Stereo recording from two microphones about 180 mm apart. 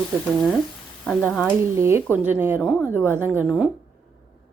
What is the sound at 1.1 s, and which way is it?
Speech, centre (ahead or behind).